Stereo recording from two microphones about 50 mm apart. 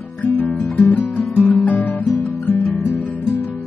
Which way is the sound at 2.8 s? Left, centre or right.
Left.